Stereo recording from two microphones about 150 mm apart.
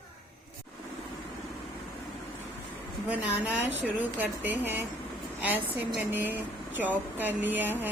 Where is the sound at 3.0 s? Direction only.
10° right (ahead or behind).